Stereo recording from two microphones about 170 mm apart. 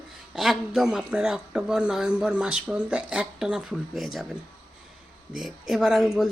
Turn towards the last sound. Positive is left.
turn(degrees=0)  # may be behind; listen again after turning